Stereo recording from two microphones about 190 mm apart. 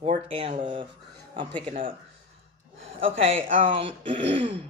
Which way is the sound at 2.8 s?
30° right (ahead or behind).